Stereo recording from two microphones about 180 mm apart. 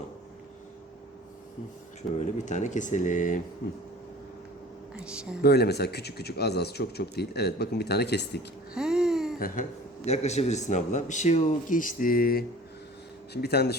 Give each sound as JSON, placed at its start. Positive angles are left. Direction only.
{"t": 2.0, "sound": "speech", "side_deg": 45}
{"t": 5.0, "sound": "speech", "side_deg": -5}
{"t": 5.4, "sound": "speech", "side_deg": 65}
{"t": 8.7, "sound": "a sound", "side_deg": -5}
{"t": 10.1, "sound": "speech", "side_deg": 40}